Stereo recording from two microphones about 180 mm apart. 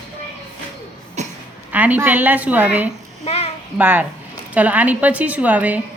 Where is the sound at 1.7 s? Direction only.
10° right (ahead or behind).